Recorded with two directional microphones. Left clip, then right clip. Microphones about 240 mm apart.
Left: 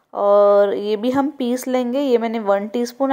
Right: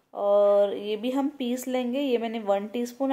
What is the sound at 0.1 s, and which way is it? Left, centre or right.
Speech, left.